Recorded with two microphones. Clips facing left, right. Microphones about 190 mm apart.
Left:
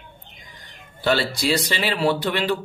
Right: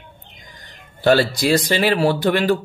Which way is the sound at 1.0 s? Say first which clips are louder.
Right 6 dB; 50° right (ahead or behind).